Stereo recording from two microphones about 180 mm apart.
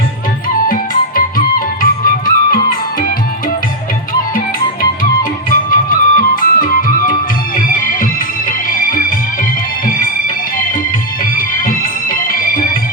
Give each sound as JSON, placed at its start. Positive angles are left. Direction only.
{"t": 0.7, "sound": "music", "side_deg": 50}
{"t": 5.5, "sound": "music", "side_deg": 50}
{"t": 11.3, "sound": "music", "side_deg": 50}